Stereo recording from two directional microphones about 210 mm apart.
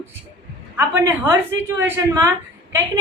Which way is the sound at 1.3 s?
10° right (ahead or behind).